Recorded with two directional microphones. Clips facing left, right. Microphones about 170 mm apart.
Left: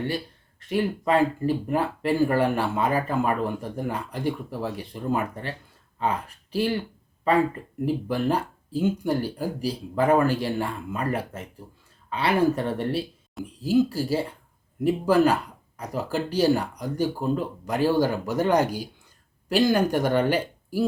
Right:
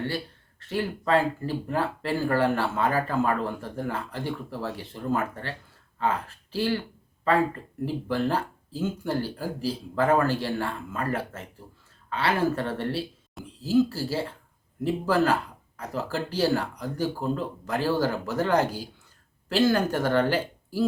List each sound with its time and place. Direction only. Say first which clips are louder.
0.7 s speech: left 2 dB; 15° left (ahead or behind)